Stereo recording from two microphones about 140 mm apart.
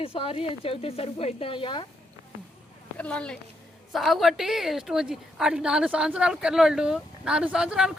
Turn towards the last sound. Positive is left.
turn(degrees=-5)  # may be behind; listen again after turning